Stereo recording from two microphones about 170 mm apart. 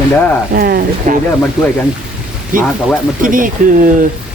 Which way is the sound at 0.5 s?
60° right (ahead or behind).